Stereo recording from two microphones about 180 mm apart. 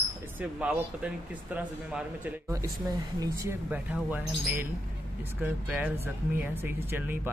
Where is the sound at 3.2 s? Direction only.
15° right (ahead or behind).